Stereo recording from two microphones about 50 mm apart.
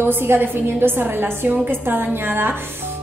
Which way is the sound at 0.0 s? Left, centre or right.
Right.